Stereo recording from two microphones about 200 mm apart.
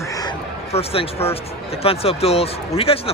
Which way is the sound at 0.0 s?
15° left (ahead or behind).